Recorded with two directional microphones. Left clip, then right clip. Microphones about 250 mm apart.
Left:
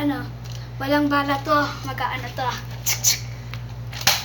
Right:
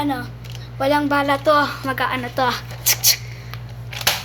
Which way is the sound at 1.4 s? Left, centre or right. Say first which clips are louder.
Right 5 dB; right.